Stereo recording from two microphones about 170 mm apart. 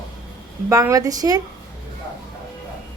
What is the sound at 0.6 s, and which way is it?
Speech, 15° right (ahead or behind).